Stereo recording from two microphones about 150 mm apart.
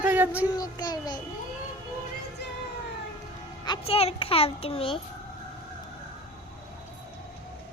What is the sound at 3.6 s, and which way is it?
A child's voice, 35° left (ahead or behind).